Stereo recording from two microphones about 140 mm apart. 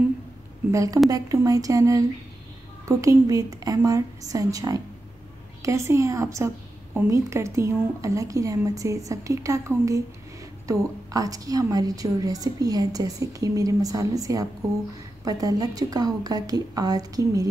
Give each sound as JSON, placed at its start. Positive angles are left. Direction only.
{"t": 0.7, "sound": "a woman's voice", "side_deg": -25}